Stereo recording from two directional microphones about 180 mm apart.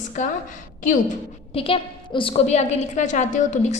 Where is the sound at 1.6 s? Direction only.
30° left (ahead or behind).